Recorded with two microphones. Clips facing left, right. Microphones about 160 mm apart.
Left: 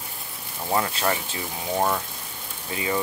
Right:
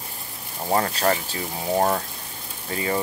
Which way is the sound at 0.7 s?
40° right (ahead or behind).